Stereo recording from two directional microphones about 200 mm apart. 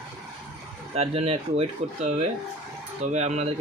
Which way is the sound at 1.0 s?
30° right (ahead or behind).